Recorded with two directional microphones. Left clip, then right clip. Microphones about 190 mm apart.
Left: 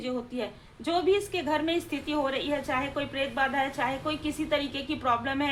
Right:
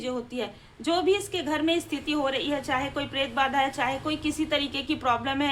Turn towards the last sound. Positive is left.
turn(degrees=-20)  # may be behind; listen again after turning